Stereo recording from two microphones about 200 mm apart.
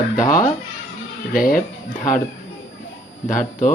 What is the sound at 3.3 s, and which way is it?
Speech, 40° left (ahead or behind).